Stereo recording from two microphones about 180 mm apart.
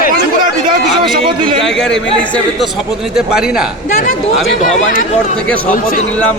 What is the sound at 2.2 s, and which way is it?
Speech, 5° left (ahead or behind).